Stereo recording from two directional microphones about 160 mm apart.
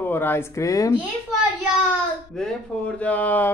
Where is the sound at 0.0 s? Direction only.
15° left (ahead or behind).